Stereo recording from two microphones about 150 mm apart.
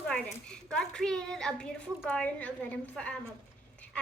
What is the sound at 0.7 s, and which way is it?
A woman's voice, 5° left (ahead or behind).